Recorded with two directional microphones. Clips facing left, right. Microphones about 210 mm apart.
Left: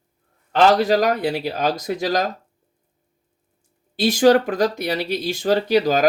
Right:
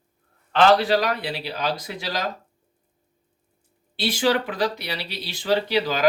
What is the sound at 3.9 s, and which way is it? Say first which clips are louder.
Speech: left 8 dB; 45° left (ahead or behind).